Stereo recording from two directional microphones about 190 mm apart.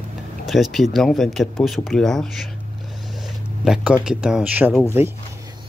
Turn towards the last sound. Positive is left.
turn(degrees=-10)  # may be behind; listen again after turning